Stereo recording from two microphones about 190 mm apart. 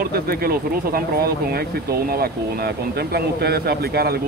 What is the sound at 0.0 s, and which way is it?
Speech, 50° right (ahead or behind).